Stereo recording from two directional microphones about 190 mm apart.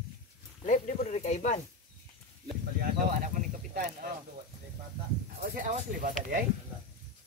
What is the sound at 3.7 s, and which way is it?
Speech, 50° right (ahead or behind).